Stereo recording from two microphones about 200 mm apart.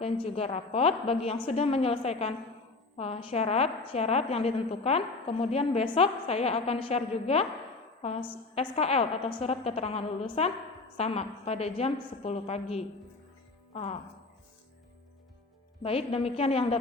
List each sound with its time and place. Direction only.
0.0 s a woman's voice: 30° left (ahead or behind)
15.8 s a woman's voice: 30° left (ahead or behind)